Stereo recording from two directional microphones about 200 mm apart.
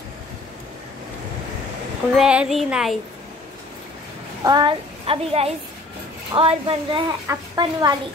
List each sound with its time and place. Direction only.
2.1 s speech: 5° right (ahead or behind)
4.4 s a woman's voice: 20° right (ahead or behind)